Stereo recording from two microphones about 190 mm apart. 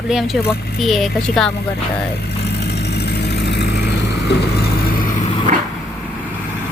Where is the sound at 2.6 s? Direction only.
60° left (ahead or behind).